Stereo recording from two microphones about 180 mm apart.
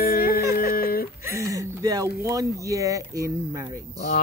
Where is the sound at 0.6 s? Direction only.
55° left (ahead or behind).